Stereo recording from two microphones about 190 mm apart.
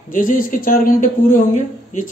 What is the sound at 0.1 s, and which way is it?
Speech, 45° left (ahead or behind).